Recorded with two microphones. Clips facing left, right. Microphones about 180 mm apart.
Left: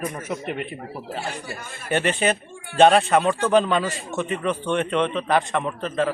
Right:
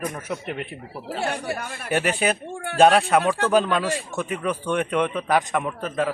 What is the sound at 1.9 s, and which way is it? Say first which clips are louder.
A man's voice: left 1 dB; 5° right (ahead or behind).